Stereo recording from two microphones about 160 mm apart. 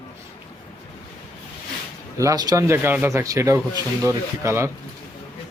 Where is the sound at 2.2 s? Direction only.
20° right (ahead or behind).